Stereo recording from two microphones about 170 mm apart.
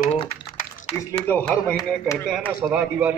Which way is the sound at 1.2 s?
10° left (ahead or behind).